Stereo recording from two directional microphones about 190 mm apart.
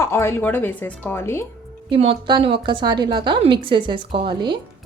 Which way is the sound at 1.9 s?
30° right (ahead or behind).